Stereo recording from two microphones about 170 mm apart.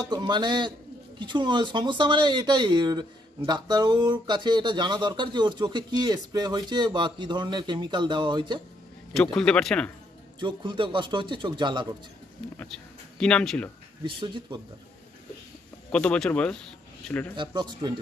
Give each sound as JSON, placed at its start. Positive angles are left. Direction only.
{"t": 0.1, "sound": "speech", "side_deg": -25}
{"t": 9.1, "sound": "a man's voice", "side_deg": 5}
{"t": 10.4, "sound": "speech", "side_deg": -30}
{"t": 12.5, "sound": "speech", "side_deg": 5}
{"t": 14.0, "sound": "speech", "side_deg": -30}
{"t": 15.9, "sound": "speech", "side_deg": 5}
{"t": 17.4, "sound": "speech", "side_deg": -25}